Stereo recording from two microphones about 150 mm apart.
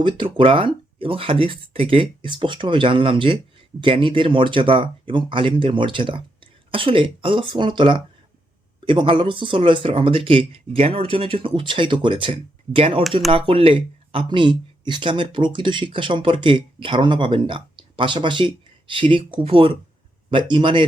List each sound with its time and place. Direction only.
0.3 s speech: 35° right (ahead or behind)